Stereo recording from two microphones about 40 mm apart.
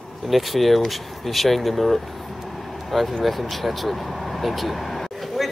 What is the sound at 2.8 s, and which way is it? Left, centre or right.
Vehicle, centre.